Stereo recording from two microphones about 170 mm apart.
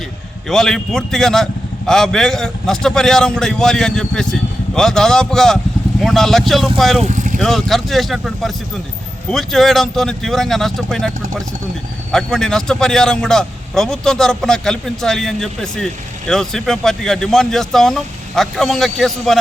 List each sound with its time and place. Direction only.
0.4 s a man's voice: centre (ahead or behind)
7.0 s vehicle: 45° right (ahead or behind)
7.3 s a man's voice: centre (ahead or behind)